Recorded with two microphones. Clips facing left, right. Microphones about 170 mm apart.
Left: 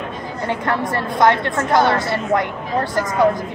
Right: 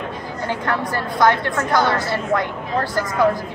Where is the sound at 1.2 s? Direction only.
25° left (ahead or behind).